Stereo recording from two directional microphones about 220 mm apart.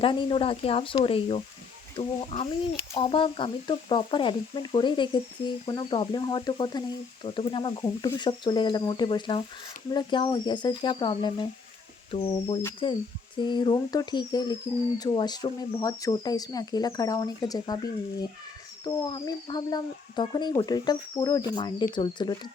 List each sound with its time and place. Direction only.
0.0 s speech: 20° left (ahead or behind)
18.9 s speech: 15° left (ahead or behind)